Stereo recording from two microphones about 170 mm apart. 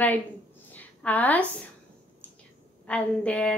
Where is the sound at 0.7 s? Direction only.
10° left (ahead or behind).